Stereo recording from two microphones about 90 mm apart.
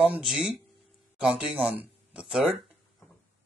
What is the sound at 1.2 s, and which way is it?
Speech, 15° right (ahead or behind).